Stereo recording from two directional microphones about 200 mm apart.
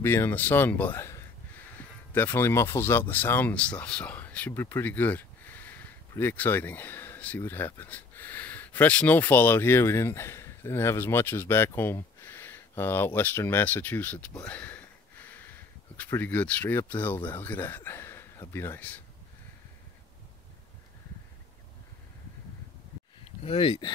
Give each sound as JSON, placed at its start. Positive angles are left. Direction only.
{"t": 0.0, "sound": "speech", "side_deg": 10}
{"t": 23.4, "sound": "speech", "side_deg": 30}